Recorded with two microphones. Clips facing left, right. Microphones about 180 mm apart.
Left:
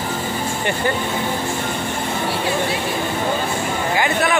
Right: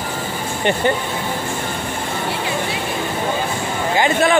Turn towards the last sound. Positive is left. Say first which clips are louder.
# right 3 dB
turn(degrees=-25)  # may be behind; listen again after turning